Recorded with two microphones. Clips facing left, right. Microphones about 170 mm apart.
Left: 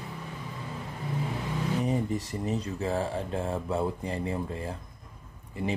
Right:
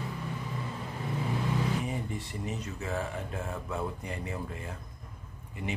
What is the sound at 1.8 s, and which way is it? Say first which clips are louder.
Speech: left 7 dB; 40° left (ahead or behind).